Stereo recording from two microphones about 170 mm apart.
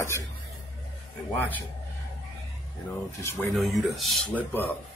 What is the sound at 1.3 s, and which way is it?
Speech, 10° left (ahead or behind).